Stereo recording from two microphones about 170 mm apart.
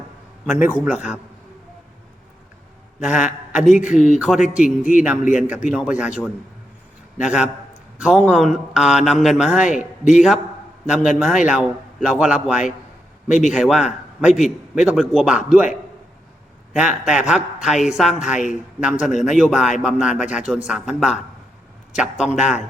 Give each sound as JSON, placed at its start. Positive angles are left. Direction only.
{"t": 0.4, "sound": "a man's voice", "side_deg": -10}
{"t": 3.0, "sound": "speech", "side_deg": -5}
{"t": 5.2, "sound": "a man's voice", "side_deg": 45}
{"t": 5.5, "sound": "speech", "side_deg": -5}
{"t": 16.7, "sound": "speech", "side_deg": -5}